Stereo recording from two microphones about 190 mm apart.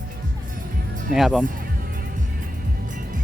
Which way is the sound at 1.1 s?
5° right (ahead or behind).